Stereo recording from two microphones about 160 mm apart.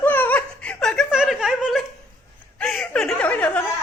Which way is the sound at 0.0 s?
10° left (ahead or behind).